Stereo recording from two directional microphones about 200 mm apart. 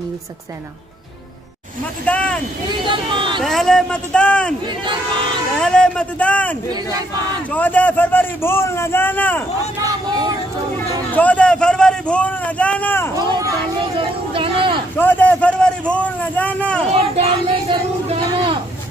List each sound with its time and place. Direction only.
2.0 s a man's voice: 5° left (ahead or behind)
2.9 s speech: 25° right (ahead or behind)
3.4 s a man's voice: centre (ahead or behind)
5.6 s a man's voice: 5° left (ahead or behind)
6.7 s speech: 20° right (ahead or behind)
7.5 s a man's voice: 10° left (ahead or behind)
9.8 s speech: 20° right (ahead or behind)
11.1 s a man's voice: 5° left (ahead or behind)
13.2 s a sound: 20° right (ahead or behind)
13.9 s vehicle: 25° right (ahead or behind)
15.0 s a man's voice: 10° left (ahead or behind)
17.1 s a sound: 30° right (ahead or behind)